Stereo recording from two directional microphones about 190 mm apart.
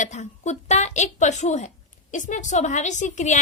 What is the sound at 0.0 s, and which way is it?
A woman's voice, 40° left (ahead or behind).